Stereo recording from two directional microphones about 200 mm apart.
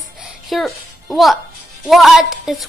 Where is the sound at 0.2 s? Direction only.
Centre (ahead or behind).